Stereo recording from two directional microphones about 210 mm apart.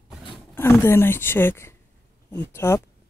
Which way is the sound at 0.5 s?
10° left (ahead or behind).